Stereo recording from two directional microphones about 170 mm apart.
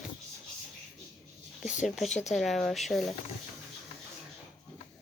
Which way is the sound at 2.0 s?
45° left (ahead or behind).